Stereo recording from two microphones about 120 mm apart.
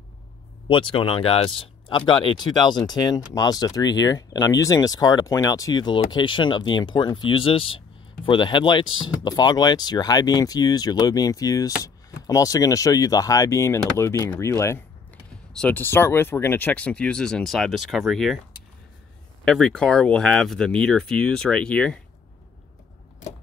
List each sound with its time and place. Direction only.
0.7 s speech: 45° left (ahead or behind); by 18.4 s centre (ahead or behind)
19.4 s speech: 5° left (ahead or behind)